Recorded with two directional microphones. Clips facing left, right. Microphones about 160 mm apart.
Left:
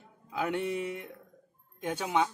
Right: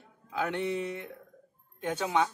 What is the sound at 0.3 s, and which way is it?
Speech, 10° left (ahead or behind).